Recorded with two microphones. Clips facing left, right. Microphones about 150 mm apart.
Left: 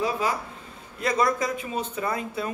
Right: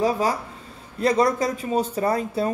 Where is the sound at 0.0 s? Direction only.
40° right (ahead or behind).